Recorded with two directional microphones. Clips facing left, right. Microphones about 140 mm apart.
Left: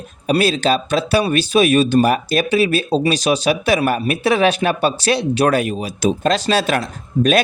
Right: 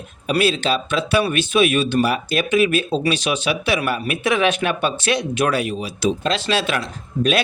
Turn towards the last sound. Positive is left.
turn(degrees=45)  # may be behind; listen again after turning